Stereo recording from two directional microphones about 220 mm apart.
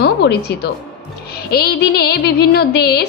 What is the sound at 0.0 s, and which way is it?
A woman's voice, 50° left (ahead or behind).